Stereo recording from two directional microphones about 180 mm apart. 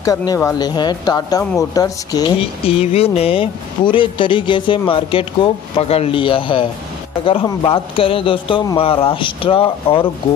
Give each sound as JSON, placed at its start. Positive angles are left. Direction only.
{"t": 0.0, "sound": "speech", "side_deg": 20}
{"t": 2.6, "sound": "speech", "side_deg": 35}